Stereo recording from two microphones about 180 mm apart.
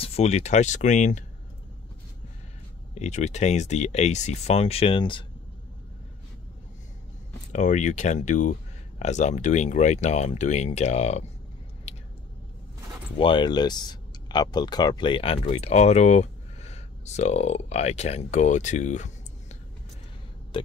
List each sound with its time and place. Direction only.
0.0 s speech: 35° left (ahead or behind)
2.9 s speech: 40° left (ahead or behind)
7.5 s speech: 40° left (ahead or behind)
13.2 s speech: 25° left (ahead or behind)
20.5 s a sound: 30° left (ahead or behind)